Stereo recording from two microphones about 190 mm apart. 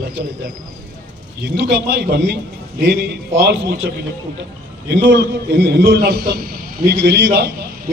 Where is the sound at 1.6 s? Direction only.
65° right (ahead or behind).